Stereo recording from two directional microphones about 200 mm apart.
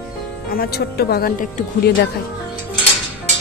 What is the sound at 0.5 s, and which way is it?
Speech, 50° left (ahead or behind).